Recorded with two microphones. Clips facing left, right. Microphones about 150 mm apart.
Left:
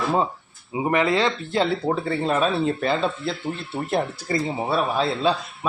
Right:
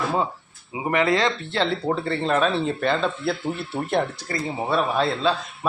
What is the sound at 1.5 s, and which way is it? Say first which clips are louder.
Speech: left 1 dB; 10° left (ahead or behind).